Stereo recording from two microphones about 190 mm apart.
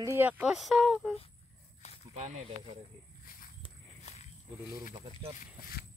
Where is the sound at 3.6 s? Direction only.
35° left (ahead or behind).